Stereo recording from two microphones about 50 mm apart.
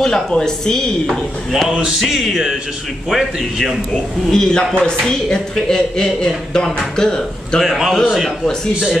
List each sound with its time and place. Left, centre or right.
0.0 s a man's voice: centre
1.7 s music: centre
2.0 s music: centre
3.1 s a man's voice: centre
4.3 s a man's voice: centre
7.6 s a man's voice: centre